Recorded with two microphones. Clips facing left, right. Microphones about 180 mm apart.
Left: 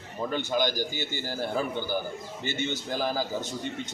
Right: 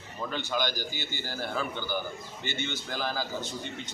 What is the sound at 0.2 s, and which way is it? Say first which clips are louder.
A man's voice: left 4 dB; 45° left (ahead or behind).